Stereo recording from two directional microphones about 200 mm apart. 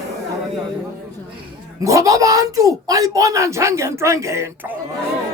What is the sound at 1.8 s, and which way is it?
Speech, 15° right (ahead or behind).